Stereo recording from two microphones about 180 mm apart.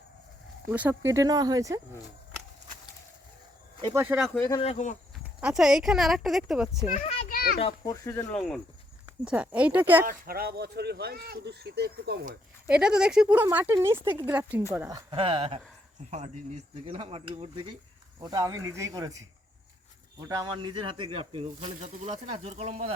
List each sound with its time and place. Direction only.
0.7 s speech: 10° right (ahead or behind)
3.8 s speech: 25° right (ahead or behind)
4.0 s speech: 5° right (ahead or behind)
4.4 s speech: 15° left (ahead or behind)
4.6 s speech: 40° left (ahead or behind)
5.4 s speech: 5° right (ahead or behind)
6.9 s a sound: 35° left (ahead or behind)
7.3 s a sound: 55° left (ahead or behind)
7.9 s speech: 15° left (ahead or behind)
8.4 s speech: centre (ahead or behind)
10.1 s speech: 55° right (ahead or behind)
12.6 s speech: 5° right (ahead or behind)
15.1 s speech: 30° right (ahead or behind)